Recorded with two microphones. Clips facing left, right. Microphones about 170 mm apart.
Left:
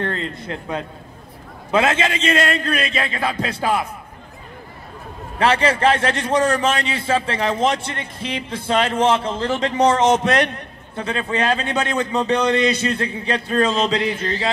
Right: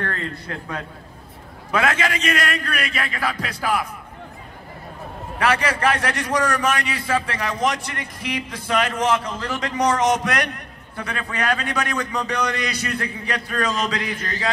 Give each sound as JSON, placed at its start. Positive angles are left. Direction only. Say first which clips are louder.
{"t": 0.0, "sound": "a man's voice", "louder": "left 3 dB", "side_deg": 20}
{"t": 5.4, "sound": "a man's voice", "louder": "left 4 dB", "side_deg": 25}